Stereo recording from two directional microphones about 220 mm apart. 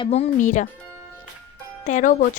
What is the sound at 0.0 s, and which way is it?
Speech, 30° left (ahead or behind).